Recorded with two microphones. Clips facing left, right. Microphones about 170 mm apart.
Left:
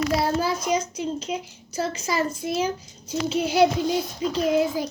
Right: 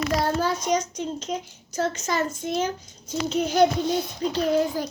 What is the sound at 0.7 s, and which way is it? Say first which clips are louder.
A child's voice: even; 10° left (ahead or behind).